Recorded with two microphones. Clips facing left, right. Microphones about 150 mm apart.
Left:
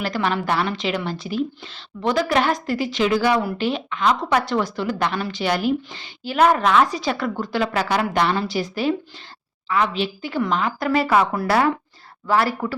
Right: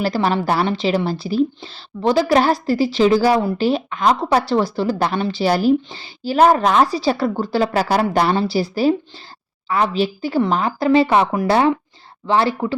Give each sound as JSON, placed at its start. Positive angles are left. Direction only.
{"t": 0.0, "sound": "a woman's voice", "side_deg": -35}